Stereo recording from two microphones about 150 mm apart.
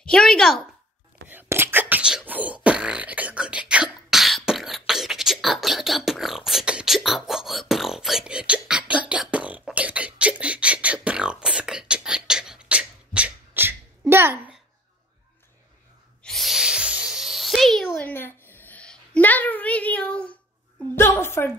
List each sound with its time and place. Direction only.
0.0 s a woman's voice: 5° left (ahead or behind)
1.3 s beatboxing: 15° right (ahead or behind)
16.2 s a sound: centre (ahead or behind)